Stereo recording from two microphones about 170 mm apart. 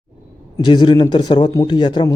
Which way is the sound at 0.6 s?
25° left (ahead or behind).